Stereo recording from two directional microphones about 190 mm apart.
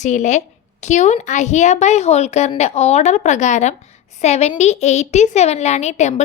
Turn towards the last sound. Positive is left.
turn(degrees=35)  # may be behind; listen again after turning